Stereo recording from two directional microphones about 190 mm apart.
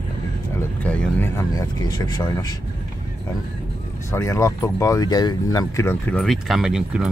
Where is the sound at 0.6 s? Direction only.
10° left (ahead or behind).